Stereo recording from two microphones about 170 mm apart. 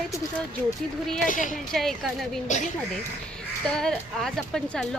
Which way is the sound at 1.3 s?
50° left (ahead or behind).